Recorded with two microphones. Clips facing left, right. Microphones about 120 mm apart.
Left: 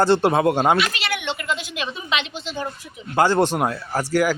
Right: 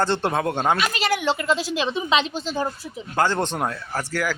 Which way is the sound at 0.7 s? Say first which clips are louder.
Right 1 dB; 40° right (ahead or behind).